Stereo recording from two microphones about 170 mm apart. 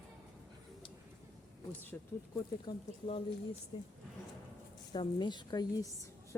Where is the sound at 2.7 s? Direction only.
30° left (ahead or behind).